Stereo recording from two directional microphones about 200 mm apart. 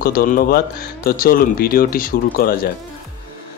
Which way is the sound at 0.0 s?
45° left (ahead or behind).